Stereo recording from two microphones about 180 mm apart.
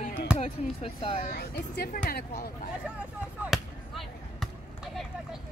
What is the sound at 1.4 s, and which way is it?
Speech, 60° left (ahead or behind).